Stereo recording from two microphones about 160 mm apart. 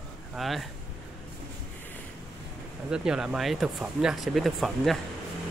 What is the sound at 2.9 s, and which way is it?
Speech, 5° right (ahead or behind).